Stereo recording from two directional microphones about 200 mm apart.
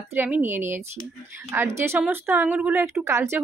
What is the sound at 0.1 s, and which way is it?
A woman's voice, 10° right (ahead or behind).